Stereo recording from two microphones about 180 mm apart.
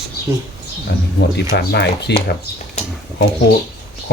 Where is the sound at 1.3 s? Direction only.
65° left (ahead or behind).